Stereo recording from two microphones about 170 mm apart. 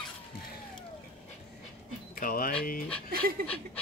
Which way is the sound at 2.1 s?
55° left (ahead or behind).